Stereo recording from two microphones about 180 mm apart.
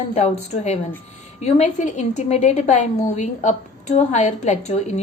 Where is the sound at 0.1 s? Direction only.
35° left (ahead or behind).